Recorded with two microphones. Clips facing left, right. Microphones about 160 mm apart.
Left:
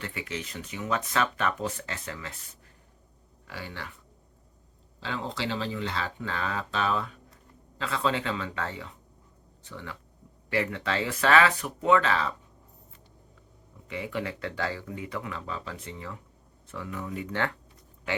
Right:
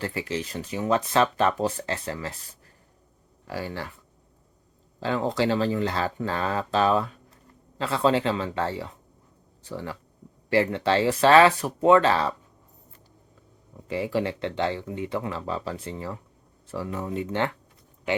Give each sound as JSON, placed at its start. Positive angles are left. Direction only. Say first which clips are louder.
{"t": 0.0, "sound": "speech", "louder": "right 6 dB", "side_deg": -35}
{"t": 3.4, "sound": "speech", "louder": "right 8 dB", "side_deg": -40}
{"t": 4.9, "sound": "speech", "louder": "right 9 dB", "side_deg": -45}
{"t": 13.8, "sound": "speech", "louder": "right 7 dB", "side_deg": -35}